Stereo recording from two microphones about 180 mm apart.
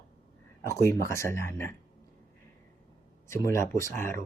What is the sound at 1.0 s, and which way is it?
Speech, 15° left (ahead or behind).